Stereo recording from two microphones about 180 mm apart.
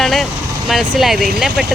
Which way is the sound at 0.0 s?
Centre (ahead or behind).